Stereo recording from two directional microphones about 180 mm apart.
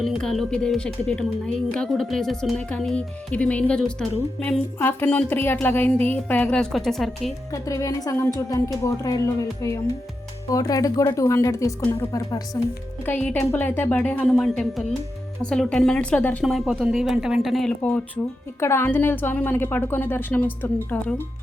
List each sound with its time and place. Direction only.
0.0 s speech: centre (ahead or behind)
7.5 s speech: 20° left (ahead or behind)